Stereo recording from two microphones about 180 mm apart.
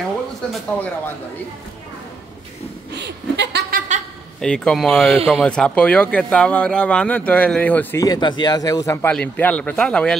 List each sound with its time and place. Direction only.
0.5 s speech: 10° left (ahead or behind)
2.9 s speech: 70° right (ahead or behind)
4.4 s a man's voice: 5° left (ahead or behind)